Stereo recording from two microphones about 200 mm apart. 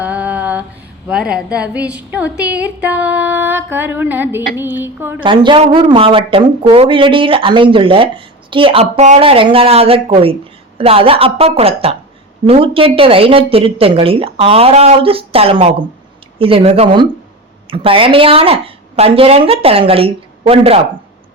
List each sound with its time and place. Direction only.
0.0 s a sound: 5° right (ahead or behind)
1.0 s a woman's voice: 5° right (ahead or behind)
5.2 s speech: 25° right (ahead or behind)